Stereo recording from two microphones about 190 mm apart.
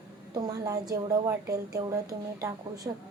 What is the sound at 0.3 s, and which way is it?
Speech, 20° right (ahead or behind).